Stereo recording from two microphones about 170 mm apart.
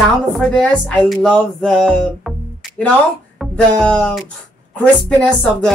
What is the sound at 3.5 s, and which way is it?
Music, 5° left (ahead or behind).